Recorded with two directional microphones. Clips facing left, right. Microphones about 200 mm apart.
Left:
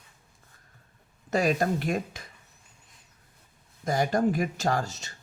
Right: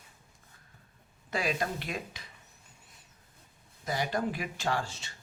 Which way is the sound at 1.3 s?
45° left (ahead or behind).